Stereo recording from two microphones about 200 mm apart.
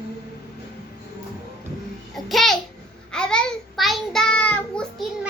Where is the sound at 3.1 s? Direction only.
5° left (ahead or behind).